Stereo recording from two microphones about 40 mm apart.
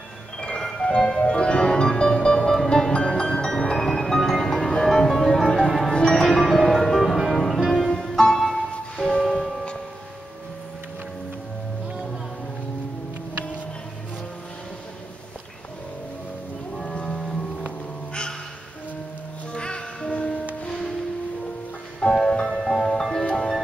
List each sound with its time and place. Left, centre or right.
0.4 s music: centre
16.9 s music: centre
19.5 s music: left
22.0 s music: centre